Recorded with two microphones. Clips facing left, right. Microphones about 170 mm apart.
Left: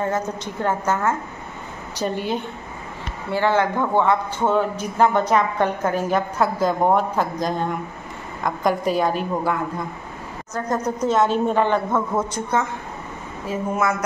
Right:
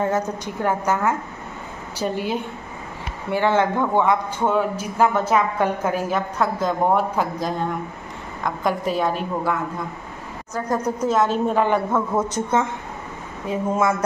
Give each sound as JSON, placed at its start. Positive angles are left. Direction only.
{"t": 0.0, "sound": "a woman's voice", "side_deg": -15}
{"t": 3.3, "sound": "a woman's voice", "side_deg": -20}
{"t": 10.5, "sound": "speech", "side_deg": -10}
{"t": 12.4, "sound": "a woman's voice", "side_deg": -25}